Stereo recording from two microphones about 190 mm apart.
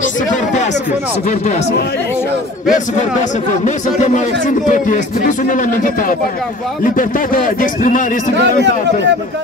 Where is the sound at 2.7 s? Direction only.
40° left (ahead or behind).